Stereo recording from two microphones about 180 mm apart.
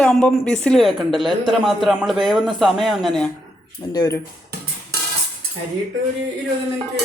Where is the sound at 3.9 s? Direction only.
20° left (ahead or behind).